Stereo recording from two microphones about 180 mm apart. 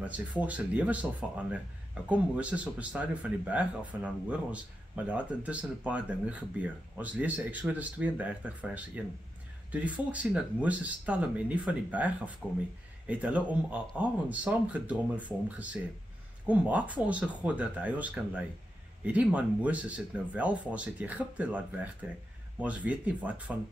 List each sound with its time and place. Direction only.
0.0 s speech: 5° right (ahead or behind)
2.0 s speech: 5° right (ahead or behind)
12.4 s speech: 5° left (ahead or behind)
13.0 s speech: 5° right (ahead or behind)
16.4 s speech: 10° right (ahead or behind)